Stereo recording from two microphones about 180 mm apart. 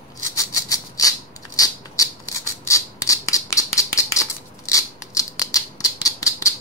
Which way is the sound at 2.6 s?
15° left (ahead or behind).